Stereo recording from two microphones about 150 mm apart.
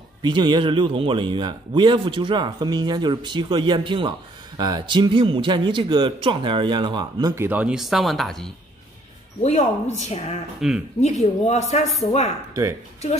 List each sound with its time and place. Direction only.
0.2 s a man's voice: 30° right (ahead or behind)
7.3 s speech: 10° right (ahead or behind)
9.4 s speech: 50° left (ahead or behind)
10.6 s speech: centre (ahead or behind)
11.0 s speech: 50° left (ahead or behind)